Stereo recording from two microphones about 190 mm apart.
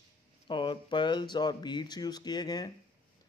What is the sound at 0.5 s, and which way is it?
Speech, 25° left (ahead or behind).